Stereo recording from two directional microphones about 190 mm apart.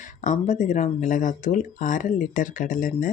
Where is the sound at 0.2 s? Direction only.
40° left (ahead or behind).